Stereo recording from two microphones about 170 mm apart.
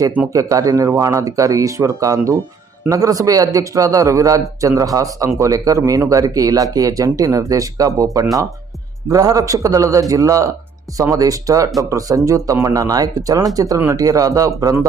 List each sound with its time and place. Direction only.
0.3 s speech: 20° right (ahead or behind)